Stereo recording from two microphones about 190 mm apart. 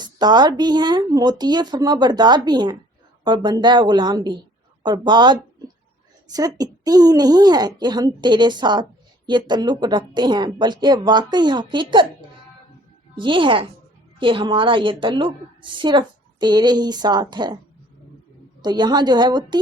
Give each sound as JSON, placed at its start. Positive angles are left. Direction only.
{"t": 0.0, "sound": "a woman's voice", "side_deg": -20}
{"t": 13.1, "sound": "a woman's voice", "side_deg": -25}
{"t": 18.6, "sound": "a woman's voice", "side_deg": -20}